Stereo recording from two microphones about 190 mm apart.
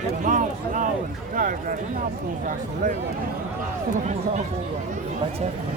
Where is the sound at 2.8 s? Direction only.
40° right (ahead or behind).